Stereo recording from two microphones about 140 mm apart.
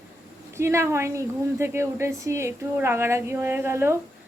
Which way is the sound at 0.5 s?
20° right (ahead or behind).